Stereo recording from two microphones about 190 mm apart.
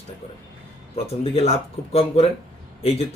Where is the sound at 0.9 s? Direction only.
30° left (ahead or behind).